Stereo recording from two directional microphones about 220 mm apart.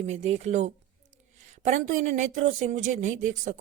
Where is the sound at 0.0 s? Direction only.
30° right (ahead or behind).